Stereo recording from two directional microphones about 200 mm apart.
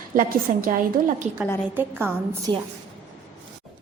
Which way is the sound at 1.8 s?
10° right (ahead or behind).